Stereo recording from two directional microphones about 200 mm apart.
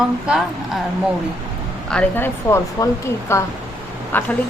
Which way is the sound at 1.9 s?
5° left (ahead or behind).